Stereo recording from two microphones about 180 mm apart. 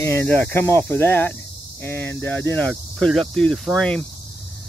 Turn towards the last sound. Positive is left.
turn(degrees=5)  # may be behind; listen again after turning